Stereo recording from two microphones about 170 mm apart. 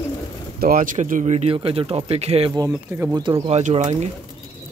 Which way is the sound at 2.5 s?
20° right (ahead or behind).